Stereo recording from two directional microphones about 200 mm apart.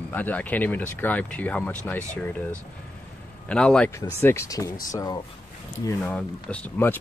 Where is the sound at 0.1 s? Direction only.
10° left (ahead or behind).